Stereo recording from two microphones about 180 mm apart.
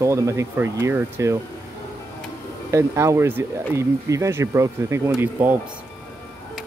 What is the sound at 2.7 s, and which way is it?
Speech, 15° right (ahead or behind).